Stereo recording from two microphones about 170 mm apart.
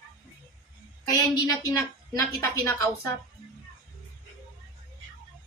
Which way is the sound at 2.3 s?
20° left (ahead or behind).